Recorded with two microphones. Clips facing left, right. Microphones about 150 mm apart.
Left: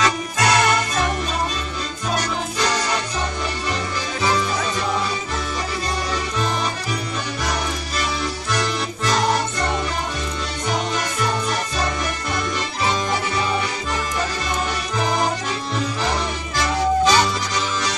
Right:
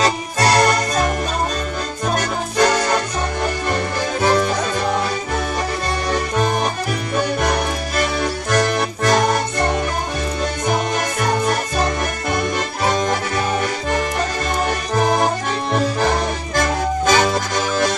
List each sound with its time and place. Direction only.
0.0 s music: 35° right (ahead or behind)
2.1 s music: 50° right (ahead or behind)
4.2 s music: 50° right (ahead or behind)
6.1 s music: 55° right (ahead or behind)
15.0 s accordion: 55° right (ahead or behind)